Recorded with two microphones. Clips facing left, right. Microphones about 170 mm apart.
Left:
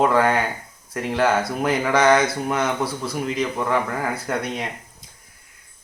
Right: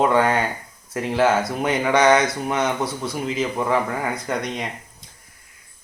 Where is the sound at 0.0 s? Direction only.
Centre (ahead or behind).